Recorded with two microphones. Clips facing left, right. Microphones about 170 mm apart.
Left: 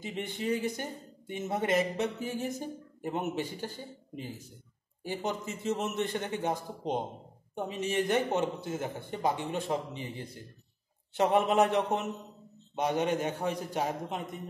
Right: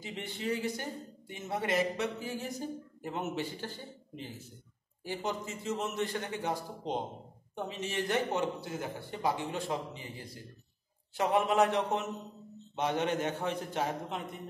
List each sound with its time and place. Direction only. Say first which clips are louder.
0.0 s a man's voice: left 3 dB; 20° left (ahead or behind)